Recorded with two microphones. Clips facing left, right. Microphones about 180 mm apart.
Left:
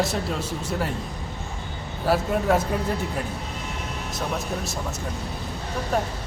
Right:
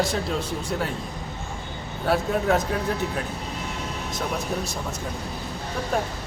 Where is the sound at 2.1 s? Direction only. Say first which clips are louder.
Left 1 dB; 5° left (ahead or behind).